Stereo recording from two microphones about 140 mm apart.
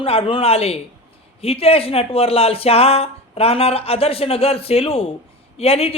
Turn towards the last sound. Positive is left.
turn(degrees=45)  # may be behind; listen again after turning